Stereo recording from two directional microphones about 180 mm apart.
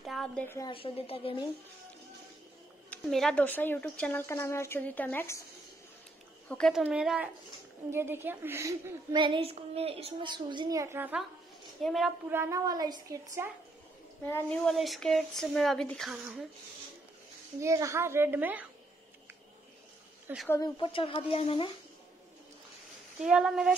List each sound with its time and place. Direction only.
0.0 s speech: centre (ahead or behind)
0.6 s a woman's voice: 30° left (ahead or behind)
2.9 s speech: centre (ahead or behind)
6.5 s a child's voice: 5° left (ahead or behind)
11.8 s speech: centre (ahead or behind)
12.3 s a woman's voice: 15° right (ahead or behind)
14.2 s speech: 10° left (ahead or behind)
17.6 s a woman's voice: 15° right (ahead or behind)
20.4 s speech: 15° left (ahead or behind)
20.7 s speech: 30° left (ahead or behind)
23.2 s speech: 5° right (ahead or behind)